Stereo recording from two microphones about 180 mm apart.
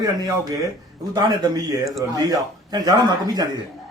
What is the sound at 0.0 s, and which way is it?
A man's voice, 20° right (ahead or behind).